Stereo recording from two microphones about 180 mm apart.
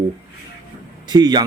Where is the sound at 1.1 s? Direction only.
25° right (ahead or behind).